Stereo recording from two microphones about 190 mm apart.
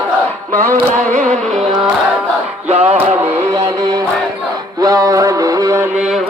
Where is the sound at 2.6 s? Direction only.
35° right (ahead or behind).